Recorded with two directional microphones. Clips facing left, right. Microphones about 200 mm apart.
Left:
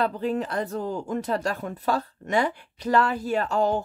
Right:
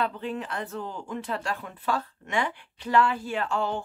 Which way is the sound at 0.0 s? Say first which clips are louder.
Left 5 dB; 40° left (ahead or behind).